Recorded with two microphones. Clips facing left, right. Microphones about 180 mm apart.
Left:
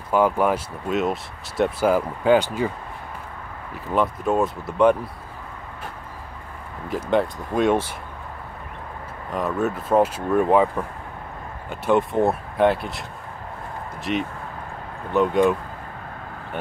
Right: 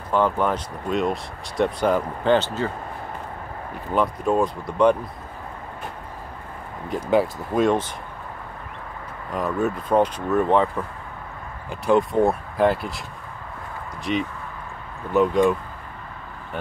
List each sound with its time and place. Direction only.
0.1 s speech: 10° left (ahead or behind)
3.7 s speech: centre (ahead or behind)
6.9 s speech: centre (ahead or behind)
9.3 s speech: centre (ahead or behind)
11.7 s speech: centre (ahead or behind)
14.1 s speech: centre (ahead or behind)